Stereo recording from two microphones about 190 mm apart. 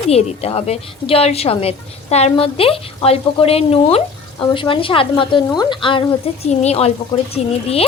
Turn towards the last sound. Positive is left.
turn(degrees=30)  # may be behind; listen again after turning